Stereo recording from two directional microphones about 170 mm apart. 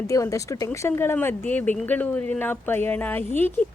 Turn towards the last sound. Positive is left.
turn(degrees=10)  # may be behind; listen again after turning